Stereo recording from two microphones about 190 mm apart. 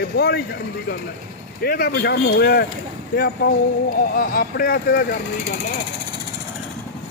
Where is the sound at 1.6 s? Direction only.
50° left (ahead or behind).